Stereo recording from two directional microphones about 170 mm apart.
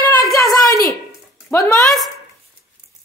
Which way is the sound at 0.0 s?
10° left (ahead or behind).